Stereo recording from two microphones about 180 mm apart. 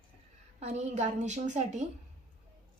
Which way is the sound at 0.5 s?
40° right (ahead or behind).